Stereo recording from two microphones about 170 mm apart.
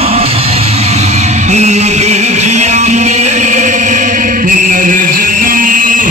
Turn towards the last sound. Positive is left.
turn(degrees=-50)  # may be behind; listen again after turning